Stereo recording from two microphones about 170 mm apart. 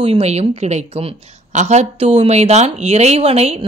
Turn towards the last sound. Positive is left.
turn(degrees=-40)  # may be behind; listen again after turning